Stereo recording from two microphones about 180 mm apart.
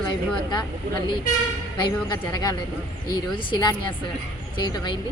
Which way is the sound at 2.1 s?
20° left (ahead or behind).